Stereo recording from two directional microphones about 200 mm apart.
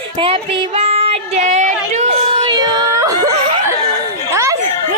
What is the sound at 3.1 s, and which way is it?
Snicker, 15° right (ahead or behind).